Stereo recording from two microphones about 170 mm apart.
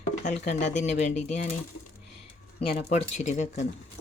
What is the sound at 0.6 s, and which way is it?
Speech, 45° left (ahead or behind).